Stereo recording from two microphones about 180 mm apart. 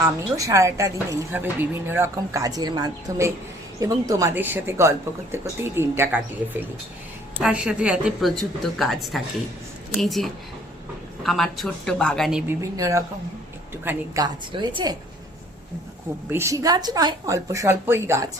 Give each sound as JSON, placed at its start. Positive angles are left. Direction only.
{"t": 0.0, "sound": "speech", "side_deg": -15}
{"t": 7.4, "sound": "a woman's voice", "side_deg": -5}
{"t": 12.7, "sound": "speech", "side_deg": -20}
{"t": 14.5, "sound": "speech", "side_deg": -30}
{"t": 16.3, "sound": "speech", "side_deg": -15}